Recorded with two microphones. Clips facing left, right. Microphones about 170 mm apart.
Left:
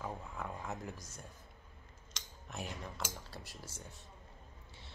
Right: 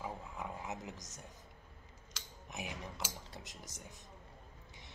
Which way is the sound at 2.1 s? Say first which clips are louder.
Left 1 dB; 15° right (ahead or behind).